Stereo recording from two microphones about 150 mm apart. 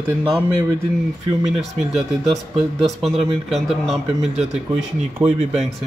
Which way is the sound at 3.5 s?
Centre (ahead or behind).